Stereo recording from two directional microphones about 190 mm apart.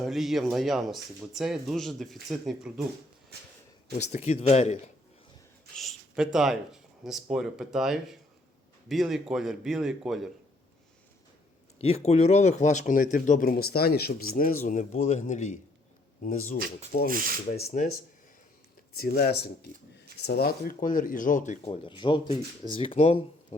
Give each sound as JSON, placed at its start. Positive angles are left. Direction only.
{"t": 0.0, "sound": "speech", "side_deg": 0}
{"t": 3.3, "sound": "speech", "side_deg": -60}
{"t": 3.9, "sound": "speech", "side_deg": 35}
{"t": 5.7, "sound": "speech", "side_deg": 0}
{"t": 11.8, "sound": "speech", "side_deg": 35}
{"t": 17.1, "sound": "speech", "side_deg": -45}
{"t": 18.9, "sound": "speech", "side_deg": 50}